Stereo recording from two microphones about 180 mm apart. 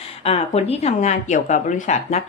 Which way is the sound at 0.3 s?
35° left (ahead or behind).